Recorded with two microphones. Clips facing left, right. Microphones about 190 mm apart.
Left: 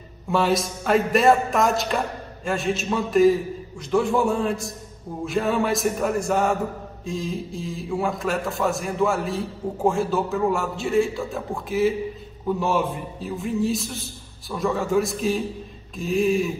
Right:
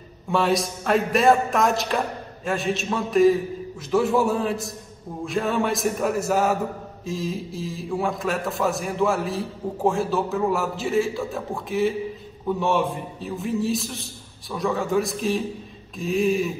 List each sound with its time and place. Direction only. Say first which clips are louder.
0.3 s a man's voice: even; centre (ahead or behind)